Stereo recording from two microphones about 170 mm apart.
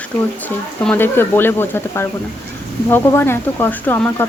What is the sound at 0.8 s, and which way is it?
Speech, 10° left (ahead or behind).